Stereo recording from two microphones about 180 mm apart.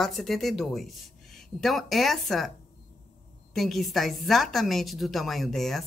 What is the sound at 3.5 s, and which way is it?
A woman's voice, centre (ahead or behind).